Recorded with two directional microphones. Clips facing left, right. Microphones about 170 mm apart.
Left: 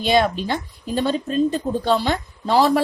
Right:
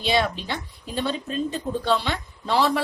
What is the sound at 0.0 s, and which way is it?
Speech, 45° left (ahead or behind).